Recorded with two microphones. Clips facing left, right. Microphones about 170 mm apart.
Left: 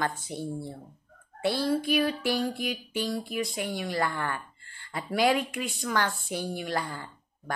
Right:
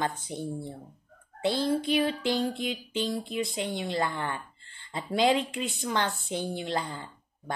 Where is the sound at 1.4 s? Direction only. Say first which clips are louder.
Even; 20° right (ahead or behind).